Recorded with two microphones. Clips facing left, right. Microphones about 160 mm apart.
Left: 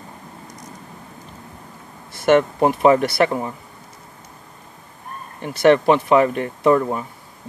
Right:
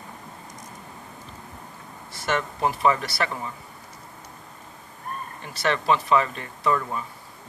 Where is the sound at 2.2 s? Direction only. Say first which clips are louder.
Left 10 dB; 55° left (ahead or behind).